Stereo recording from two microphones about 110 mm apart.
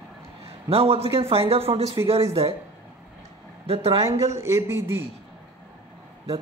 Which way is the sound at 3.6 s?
65° right (ahead or behind).